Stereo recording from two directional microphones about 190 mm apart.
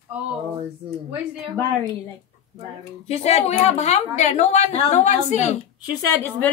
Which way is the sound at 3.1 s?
35° left (ahead or behind).